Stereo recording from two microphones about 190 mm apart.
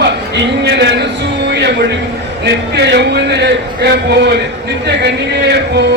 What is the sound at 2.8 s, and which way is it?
Speech, 60° right (ahead or behind).